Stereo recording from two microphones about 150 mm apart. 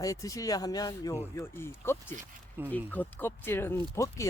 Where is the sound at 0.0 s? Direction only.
20° left (ahead or behind).